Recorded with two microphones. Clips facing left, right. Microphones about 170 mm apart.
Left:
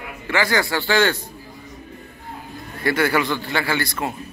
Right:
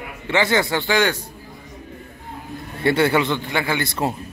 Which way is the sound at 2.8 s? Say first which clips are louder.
Right 2 dB; 25° right (ahead or behind).